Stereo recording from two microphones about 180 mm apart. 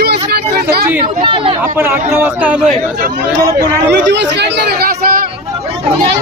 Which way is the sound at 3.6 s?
70° right (ahead or behind).